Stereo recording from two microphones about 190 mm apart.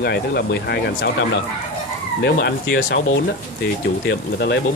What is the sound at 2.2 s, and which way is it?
Speech, 55° left (ahead or behind).